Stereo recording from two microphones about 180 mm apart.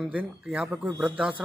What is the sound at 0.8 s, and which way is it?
Speech, 20° right (ahead or behind).